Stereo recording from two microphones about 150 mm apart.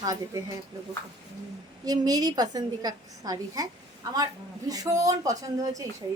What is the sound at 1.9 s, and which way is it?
A woman's voice, 25° right (ahead or behind).